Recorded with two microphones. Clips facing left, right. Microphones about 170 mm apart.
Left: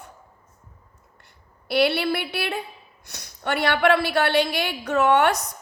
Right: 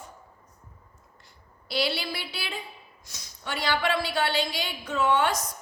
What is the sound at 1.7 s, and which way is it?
A woman's voice, 60° left (ahead or behind).